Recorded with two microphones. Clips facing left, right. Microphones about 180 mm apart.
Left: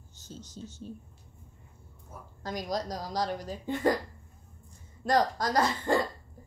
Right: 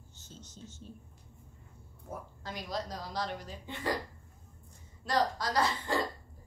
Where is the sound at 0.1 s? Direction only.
40° left (ahead or behind).